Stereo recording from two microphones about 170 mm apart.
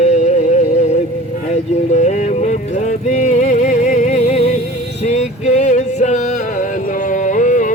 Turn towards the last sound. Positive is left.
turn(degrees=50)  # may be behind; listen again after turning